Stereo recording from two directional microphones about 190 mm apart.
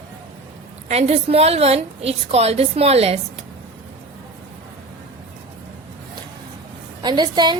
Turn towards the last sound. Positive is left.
turn(degrees=-25)  # may be behind; listen again after turning